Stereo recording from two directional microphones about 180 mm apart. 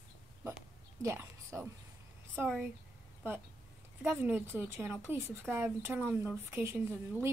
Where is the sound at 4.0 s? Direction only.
10° right (ahead or behind).